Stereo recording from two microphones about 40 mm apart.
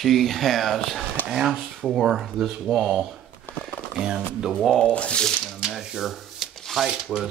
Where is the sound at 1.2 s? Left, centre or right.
Centre.